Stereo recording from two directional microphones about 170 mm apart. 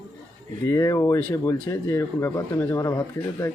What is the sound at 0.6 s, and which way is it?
Speech, 20° left (ahead or behind).